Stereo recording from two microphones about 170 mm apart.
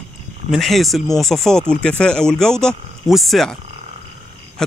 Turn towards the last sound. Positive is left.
turn(degrees=5)  # may be behind; listen again after turning